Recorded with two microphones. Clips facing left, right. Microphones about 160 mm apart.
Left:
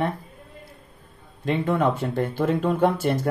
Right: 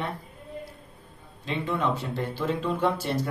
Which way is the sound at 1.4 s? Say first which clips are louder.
Left 6 dB; 55° left (ahead or behind).